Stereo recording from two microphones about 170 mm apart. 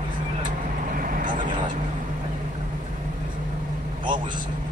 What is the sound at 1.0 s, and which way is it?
Vehicle, 55° right (ahead or behind).